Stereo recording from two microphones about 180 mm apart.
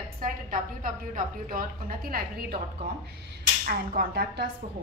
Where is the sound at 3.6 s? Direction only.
55° right (ahead or behind).